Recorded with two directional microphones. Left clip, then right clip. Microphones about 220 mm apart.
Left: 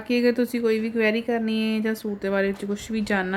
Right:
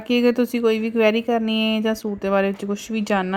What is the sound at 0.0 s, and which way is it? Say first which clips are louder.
Speech: right 3 dB; 15° right (ahead or behind).